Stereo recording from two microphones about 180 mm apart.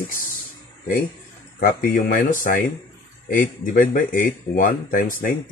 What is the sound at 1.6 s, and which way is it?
Speech, 50° left (ahead or behind).